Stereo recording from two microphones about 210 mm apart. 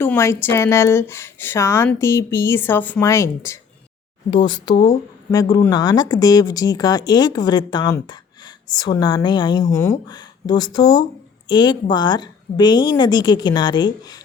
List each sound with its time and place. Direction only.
0.0 s speech: 10° left (ahead or behind)